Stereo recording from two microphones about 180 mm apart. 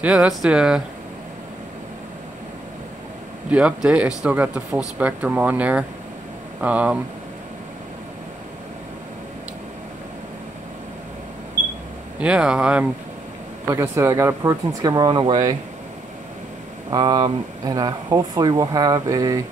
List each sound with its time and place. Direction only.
0.0 s speech: 5° right (ahead or behind)
3.4 s speech: 5° right (ahead or behind)
12.2 s speech: 5° right (ahead or behind)
13.7 s speech: 15° right (ahead or behind)
16.9 s speech: 25° right (ahead or behind)